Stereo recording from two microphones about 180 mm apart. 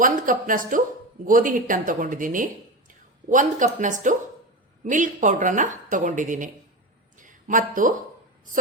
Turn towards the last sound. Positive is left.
turn(degrees=-50)  # may be behind; listen again after turning